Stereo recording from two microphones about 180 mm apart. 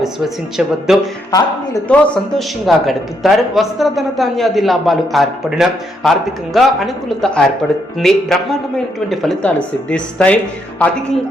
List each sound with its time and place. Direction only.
0.9 s a man's voice: 5° right (ahead or behind)
1.3 s a man's voice: 20° left (ahead or behind)
1.9 s a man's voice: centre (ahead or behind)